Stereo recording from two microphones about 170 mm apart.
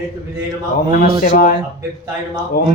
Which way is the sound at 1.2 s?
60° left (ahead or behind).